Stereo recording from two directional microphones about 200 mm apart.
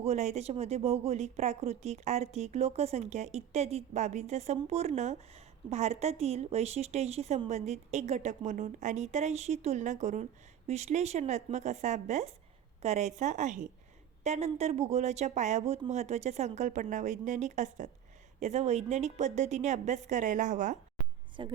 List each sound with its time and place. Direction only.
0.0 s speech: 35° right (ahead or behind)
21.4 s speech: 25° right (ahead or behind)